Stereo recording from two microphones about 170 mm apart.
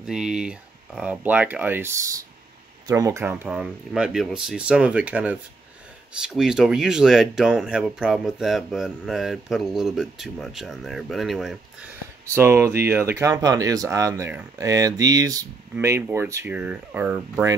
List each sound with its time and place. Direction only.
0.0 s speech: 5° right (ahead or behind)
3.4 s speech: 5° right (ahead or behind)